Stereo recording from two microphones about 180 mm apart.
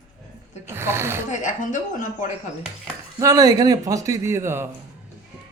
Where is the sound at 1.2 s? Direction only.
45° left (ahead or behind).